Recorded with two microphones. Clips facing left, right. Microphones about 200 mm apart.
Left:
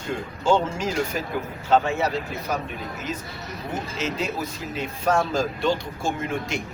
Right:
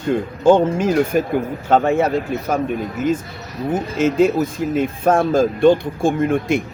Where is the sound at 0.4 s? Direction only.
55° right (ahead or behind).